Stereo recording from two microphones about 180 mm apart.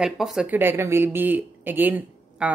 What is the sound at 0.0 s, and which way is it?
A woman's voice, 5° right (ahead or behind).